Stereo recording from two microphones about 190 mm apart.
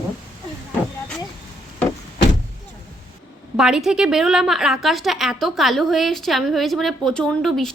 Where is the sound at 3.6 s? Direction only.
5° right (ahead or behind).